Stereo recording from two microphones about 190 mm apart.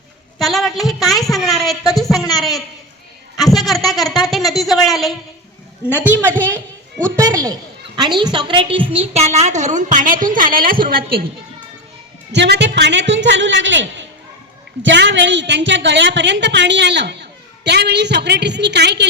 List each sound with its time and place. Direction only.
0.3 s a sound: centre (ahead or behind)
1.6 s a man's voice: centre (ahead or behind); by 11.2 s 50° right (ahead or behind)
12.3 s a woman's voice: 65° right (ahead or behind)